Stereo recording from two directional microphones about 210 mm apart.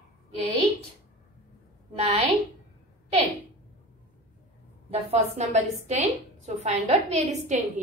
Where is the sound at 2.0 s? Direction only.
30° right (ahead or behind).